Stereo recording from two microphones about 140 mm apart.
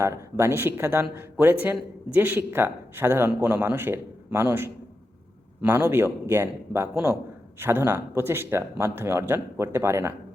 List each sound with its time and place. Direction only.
0.0 s a man's voice: 20° right (ahead or behind)